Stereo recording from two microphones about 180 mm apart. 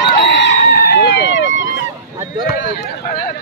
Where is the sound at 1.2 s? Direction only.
90° left.